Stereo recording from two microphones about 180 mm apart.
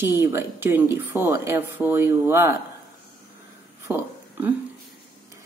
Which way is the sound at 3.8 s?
15° right (ahead or behind).